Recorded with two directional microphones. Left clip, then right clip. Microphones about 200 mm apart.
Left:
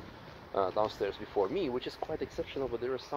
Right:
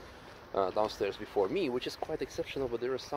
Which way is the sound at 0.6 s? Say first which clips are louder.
Even; 25° right (ahead or behind).